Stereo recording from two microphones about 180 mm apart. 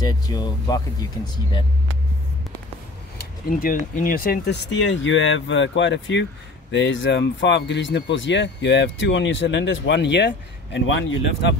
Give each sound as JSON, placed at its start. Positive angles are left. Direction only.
{"t": 0.0, "sound": "speech", "side_deg": 20}
{"t": 3.2, "sound": "speech", "side_deg": 55}